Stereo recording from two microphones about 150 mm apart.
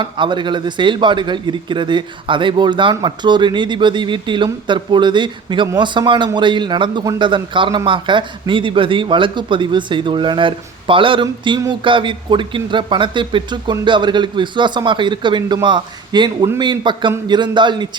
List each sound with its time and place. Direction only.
0.0 s a man's voice: 30° right (ahead or behind)